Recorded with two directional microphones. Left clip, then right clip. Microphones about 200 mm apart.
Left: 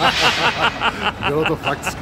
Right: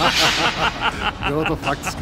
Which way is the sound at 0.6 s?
15° left (ahead or behind).